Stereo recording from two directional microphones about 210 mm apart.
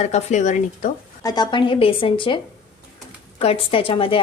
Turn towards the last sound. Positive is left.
turn(degrees=25)  # may be behind; listen again after turning